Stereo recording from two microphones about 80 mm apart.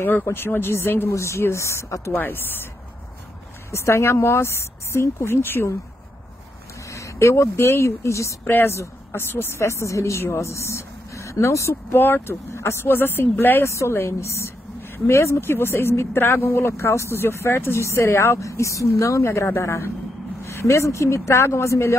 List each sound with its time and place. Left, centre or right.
0.0 s speech: left
2.1 s speech: left
3.7 s speech: left
6.9 s speech: left